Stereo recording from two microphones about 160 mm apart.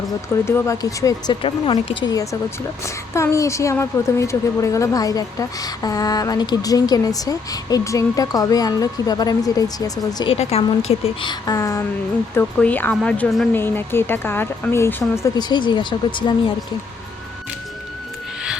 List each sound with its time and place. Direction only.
0.4 s a woman's voice: 15° left (ahead or behind)
1.4 s a woman's voice: 35° left (ahead or behind)
10.3 s a woman's voice: 40° left (ahead or behind)